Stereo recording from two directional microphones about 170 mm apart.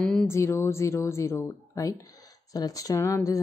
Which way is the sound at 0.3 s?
15° left (ahead or behind).